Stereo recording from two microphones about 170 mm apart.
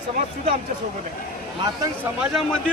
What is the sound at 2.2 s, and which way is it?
Speech, centre (ahead or behind).